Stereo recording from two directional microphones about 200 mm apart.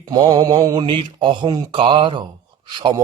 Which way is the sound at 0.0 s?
20° right (ahead or behind).